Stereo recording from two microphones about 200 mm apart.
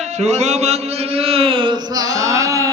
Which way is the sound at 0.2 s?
35° right (ahead or behind).